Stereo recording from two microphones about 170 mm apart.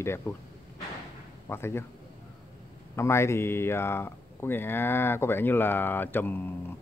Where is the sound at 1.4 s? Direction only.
15° left (ahead or behind).